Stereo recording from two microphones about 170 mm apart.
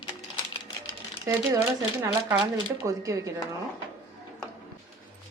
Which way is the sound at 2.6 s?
20° right (ahead or behind).